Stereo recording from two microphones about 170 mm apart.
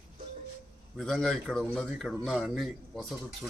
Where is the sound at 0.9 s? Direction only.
Centre (ahead or behind).